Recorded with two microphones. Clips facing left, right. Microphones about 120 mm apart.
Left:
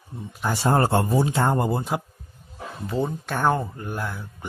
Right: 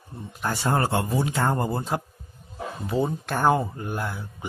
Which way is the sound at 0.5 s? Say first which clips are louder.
Left 4 dB; 25° left (ahead or behind).